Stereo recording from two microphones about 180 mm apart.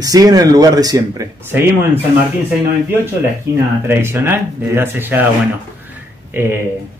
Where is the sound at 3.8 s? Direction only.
10° right (ahead or behind).